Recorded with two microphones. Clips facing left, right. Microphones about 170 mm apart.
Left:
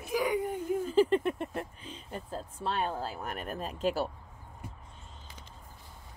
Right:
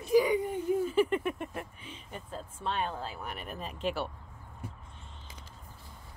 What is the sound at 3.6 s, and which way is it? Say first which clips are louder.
Speech: left 3 dB; 40° left (ahead or behind).